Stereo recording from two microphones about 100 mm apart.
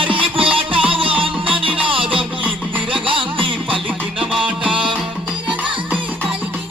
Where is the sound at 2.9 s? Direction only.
60° right (ahead or behind).